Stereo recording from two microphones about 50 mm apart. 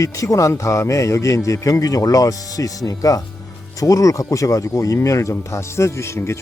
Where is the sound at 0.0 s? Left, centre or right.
Left.